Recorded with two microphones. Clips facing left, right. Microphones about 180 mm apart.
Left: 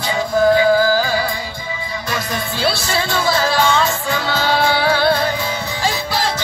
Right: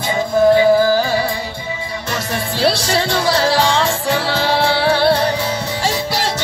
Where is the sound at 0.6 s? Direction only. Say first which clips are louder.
Right 2 dB; 25° right (ahead or behind).